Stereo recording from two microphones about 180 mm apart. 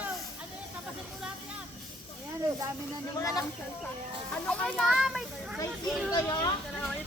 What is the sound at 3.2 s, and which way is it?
Speech, 20° left (ahead or behind).